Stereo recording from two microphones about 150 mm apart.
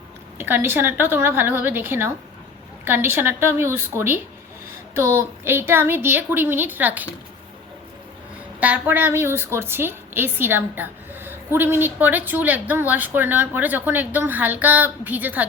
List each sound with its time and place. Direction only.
0.3 s a woman's voice: 15° right (ahead or behind)
8.6 s a woman's voice: 10° right (ahead or behind)